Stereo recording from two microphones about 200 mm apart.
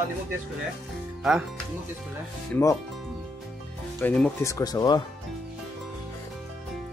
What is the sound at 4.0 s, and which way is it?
Speech, 10° left (ahead or behind).